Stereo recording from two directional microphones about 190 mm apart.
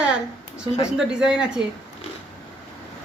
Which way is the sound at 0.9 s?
5° right (ahead or behind).